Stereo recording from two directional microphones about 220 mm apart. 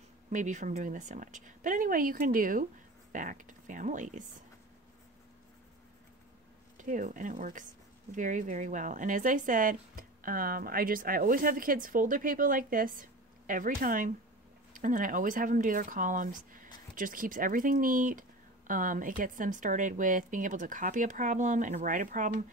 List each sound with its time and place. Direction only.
0.3 s speech: 35° right (ahead or behind)
6.8 s speech: 35° right (ahead or behind)